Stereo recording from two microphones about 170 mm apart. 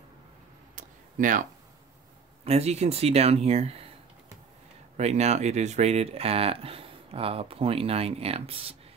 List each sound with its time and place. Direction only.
0.7 s a sound: 50° right (ahead or behind)
2.4 s speech: 40° right (ahead or behind)
4.9 s speech: 40° right (ahead or behind)